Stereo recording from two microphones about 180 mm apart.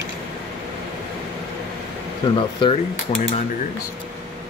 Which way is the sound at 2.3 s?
30° left (ahead or behind).